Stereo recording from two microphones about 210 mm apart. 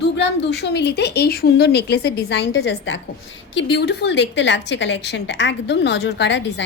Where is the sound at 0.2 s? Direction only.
55° left (ahead or behind).